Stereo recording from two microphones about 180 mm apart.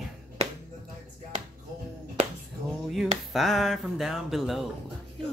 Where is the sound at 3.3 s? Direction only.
Centre (ahead or behind).